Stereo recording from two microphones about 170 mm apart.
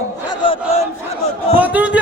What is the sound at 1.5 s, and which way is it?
Speech, 10° right (ahead or behind).